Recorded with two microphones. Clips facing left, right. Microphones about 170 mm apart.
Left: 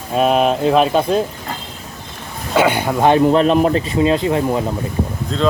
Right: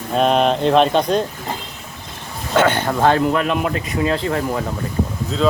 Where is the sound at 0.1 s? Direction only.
5° left (ahead or behind).